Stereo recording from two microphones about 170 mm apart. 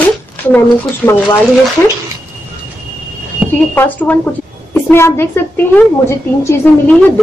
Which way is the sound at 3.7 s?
10° left (ahead or behind).